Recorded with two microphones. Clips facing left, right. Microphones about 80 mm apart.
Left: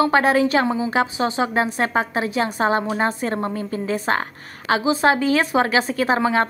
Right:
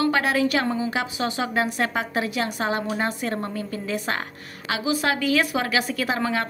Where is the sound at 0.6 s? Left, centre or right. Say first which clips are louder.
Left 3 dB; centre.